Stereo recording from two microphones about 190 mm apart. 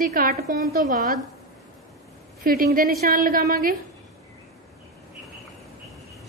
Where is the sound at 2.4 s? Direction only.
50° right (ahead or behind).